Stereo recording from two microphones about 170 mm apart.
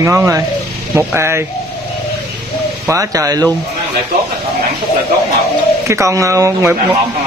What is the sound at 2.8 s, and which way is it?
Speech, 20° right (ahead or behind).